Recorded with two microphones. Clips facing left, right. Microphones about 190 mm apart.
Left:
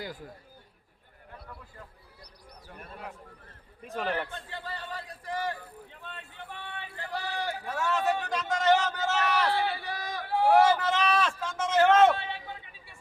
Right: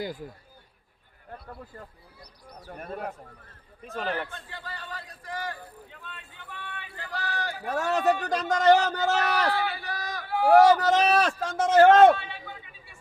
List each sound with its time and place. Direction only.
2.6 s speech: 50° right (ahead or behind)
3.8 s a man's voice: 10° left (ahead or behind)
4.3 s speech: 25° left (ahead or behind)
6.9 s speech: 25° left (ahead or behind)
7.6 s speech: 40° right (ahead or behind)
9.5 s a sound: 25° left (ahead or behind)
10.5 s speech: 40° right (ahead or behind)